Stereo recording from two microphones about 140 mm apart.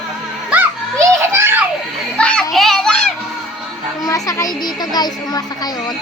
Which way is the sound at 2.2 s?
10° left (ahead or behind).